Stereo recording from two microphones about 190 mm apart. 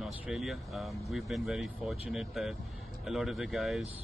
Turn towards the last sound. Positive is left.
turn(degrees=0)  # may be behind; listen again after turning